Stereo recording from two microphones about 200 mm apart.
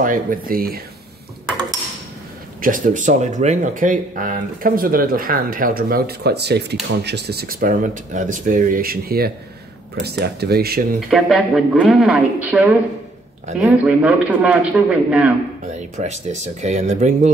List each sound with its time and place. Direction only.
0.0 s speech: 45° right (ahead or behind)
2.6 s speech: 40° right (ahead or behind)
11.1 s a woman's voice: centre (ahead or behind)
15.6 s speech: 35° right (ahead or behind)